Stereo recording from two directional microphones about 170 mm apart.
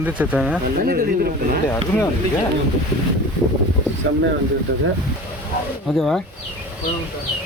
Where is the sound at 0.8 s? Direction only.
60° right (ahead or behind).